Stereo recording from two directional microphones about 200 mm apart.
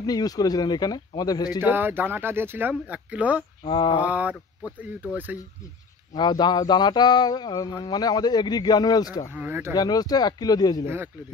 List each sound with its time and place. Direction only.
0.0 s speech: 20° left (ahead or behind)
1.6 s speech: 10° right (ahead or behind)
3.6 s speech: 25° left (ahead or behind)
4.0 s speech: 5° right (ahead or behind)
6.1 s speech: 20° left (ahead or behind)
9.3 s speech: 10° right (ahead or behind)
9.8 s speech: 20° left (ahead or behind)
11.1 s speech: 10° right (ahead or behind)